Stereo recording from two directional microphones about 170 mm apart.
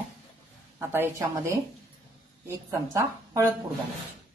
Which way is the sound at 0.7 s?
15° right (ahead or behind).